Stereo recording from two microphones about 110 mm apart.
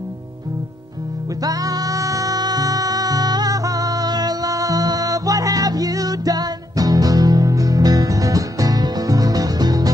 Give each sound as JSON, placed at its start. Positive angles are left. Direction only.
{"t": 1.4, "sound": "music", "side_deg": -35}